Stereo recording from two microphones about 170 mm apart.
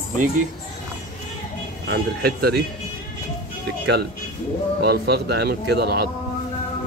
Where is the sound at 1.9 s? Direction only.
70° right (ahead or behind).